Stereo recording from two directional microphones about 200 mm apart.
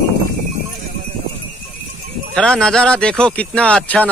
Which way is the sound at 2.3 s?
5° left (ahead or behind).